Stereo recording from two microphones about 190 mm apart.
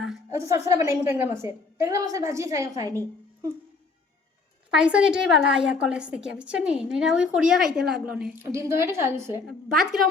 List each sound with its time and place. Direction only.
0.3 s a woman's voice: 15° right (ahead or behind)
4.7 s a woman's voice: 5° right (ahead or behind)
8.4 s a woman's voice: 15° right (ahead or behind)
9.5 s a woman's voice: centre (ahead or behind)